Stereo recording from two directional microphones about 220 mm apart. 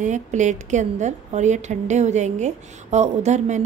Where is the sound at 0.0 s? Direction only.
35° right (ahead or behind).